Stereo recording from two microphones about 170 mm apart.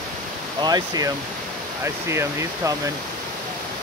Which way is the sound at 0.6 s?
25° right (ahead or behind).